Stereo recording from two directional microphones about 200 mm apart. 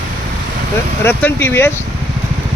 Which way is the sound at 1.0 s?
10° left (ahead or behind).